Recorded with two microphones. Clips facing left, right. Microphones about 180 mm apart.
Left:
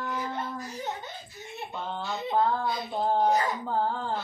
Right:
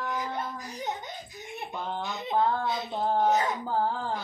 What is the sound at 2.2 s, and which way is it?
Speech, 20° right (ahead or behind).